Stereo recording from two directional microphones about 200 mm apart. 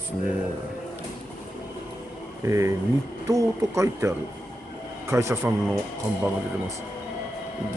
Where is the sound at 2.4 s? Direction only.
15° right (ahead or behind).